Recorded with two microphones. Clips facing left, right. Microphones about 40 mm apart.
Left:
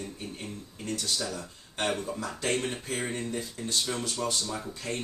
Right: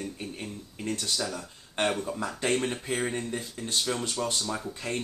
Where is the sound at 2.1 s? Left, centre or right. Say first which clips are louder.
Right 2 dB; right; by 3.3 s centre.